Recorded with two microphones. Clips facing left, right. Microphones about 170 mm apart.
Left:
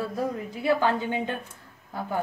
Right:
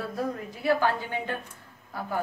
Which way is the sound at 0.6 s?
20° left (ahead or behind).